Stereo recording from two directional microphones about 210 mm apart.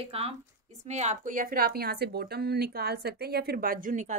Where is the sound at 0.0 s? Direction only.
30° right (ahead or behind).